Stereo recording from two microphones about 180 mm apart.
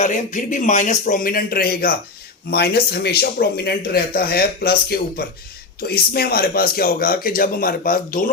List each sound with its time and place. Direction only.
0.0 s speech: 45° left (ahead or behind)